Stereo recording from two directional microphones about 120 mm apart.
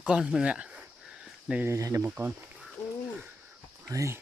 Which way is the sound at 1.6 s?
25° right (ahead or behind).